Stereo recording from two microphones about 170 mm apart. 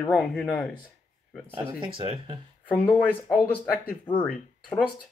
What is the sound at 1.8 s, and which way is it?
Speech, 30° right (ahead or behind).